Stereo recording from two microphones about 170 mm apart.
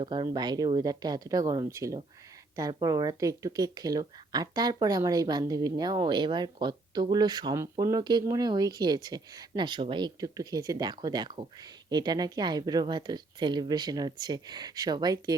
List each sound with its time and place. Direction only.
0.0 s speech: 25° right (ahead or behind)